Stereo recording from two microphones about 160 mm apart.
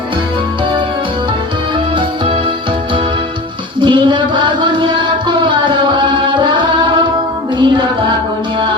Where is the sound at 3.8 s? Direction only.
30° right (ahead or behind).